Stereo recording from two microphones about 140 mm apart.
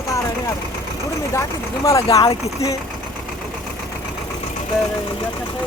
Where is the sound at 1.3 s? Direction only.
20° left (ahead or behind).